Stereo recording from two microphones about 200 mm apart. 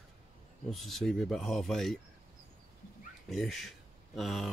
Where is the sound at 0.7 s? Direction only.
Centre (ahead or behind).